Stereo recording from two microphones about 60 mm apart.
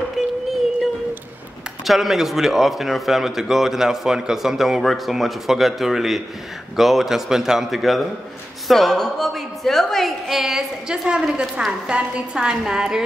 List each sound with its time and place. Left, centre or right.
0.2 s music: centre
1.9 s a man's voice: centre
11.1 s a woman's voice: centre